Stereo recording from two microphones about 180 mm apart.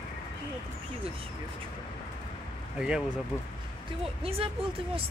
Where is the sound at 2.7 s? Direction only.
5° right (ahead or behind).